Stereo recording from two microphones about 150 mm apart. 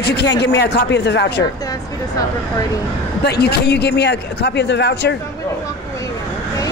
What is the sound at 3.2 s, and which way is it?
Speech, 90° left.